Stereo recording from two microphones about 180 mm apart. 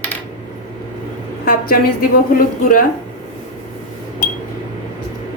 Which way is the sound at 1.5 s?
55° left (ahead or behind).